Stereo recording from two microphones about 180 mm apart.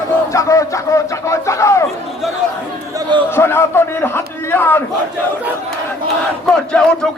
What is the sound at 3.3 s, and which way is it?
A man's voice, 15° left (ahead or behind).